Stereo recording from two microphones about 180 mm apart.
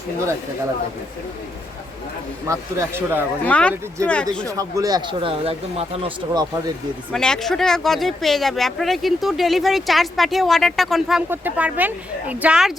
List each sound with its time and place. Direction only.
2.5 s speech: 15° right (ahead or behind)
3.4 s speech: 5° left (ahead or behind)
4.4 s speech: 20° right (ahead or behind)
7.1 s speech: 5° left (ahead or behind)